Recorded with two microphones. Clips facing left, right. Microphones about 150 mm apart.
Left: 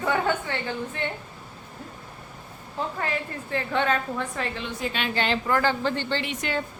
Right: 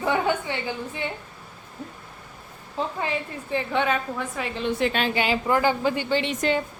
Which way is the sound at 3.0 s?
15° right (ahead or behind).